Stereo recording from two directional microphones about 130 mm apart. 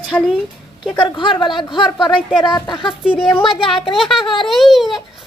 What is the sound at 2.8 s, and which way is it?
Speech, 5° right (ahead or behind).